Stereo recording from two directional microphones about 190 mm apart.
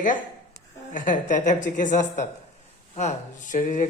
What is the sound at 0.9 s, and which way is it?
Speech, 45° left (ahead or behind).